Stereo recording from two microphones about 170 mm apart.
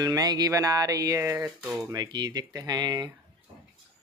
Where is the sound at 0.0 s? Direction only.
25° right (ahead or behind).